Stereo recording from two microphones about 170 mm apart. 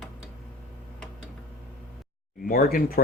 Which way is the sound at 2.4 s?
60° left (ahead or behind).